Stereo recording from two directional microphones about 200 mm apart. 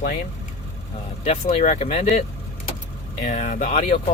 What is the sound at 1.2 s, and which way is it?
Speech, 30° left (ahead or behind).